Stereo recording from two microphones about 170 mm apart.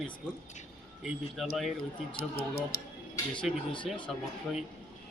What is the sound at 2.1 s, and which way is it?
Speech, 70° left (ahead or behind).